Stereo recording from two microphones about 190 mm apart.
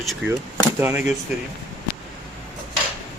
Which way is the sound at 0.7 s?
10° right (ahead or behind).